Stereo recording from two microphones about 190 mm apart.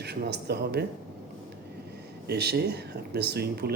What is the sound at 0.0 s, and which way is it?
Speech, 60° right (ahead or behind).